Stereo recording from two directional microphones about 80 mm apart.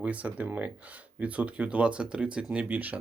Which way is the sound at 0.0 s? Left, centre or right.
Centre.